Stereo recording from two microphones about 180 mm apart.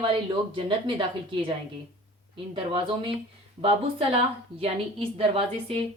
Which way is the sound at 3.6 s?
30° right (ahead or behind).